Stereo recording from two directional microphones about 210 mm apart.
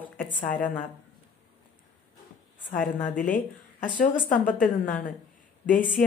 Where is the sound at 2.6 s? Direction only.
40° left (ahead or behind).